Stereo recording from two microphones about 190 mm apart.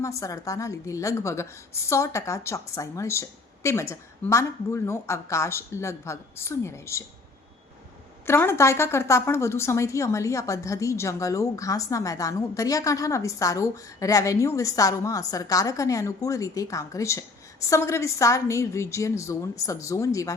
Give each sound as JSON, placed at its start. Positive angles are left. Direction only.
{"t": 0.0, "sound": "speech", "side_deg": 15}
{"t": 8.3, "sound": "speech", "side_deg": 15}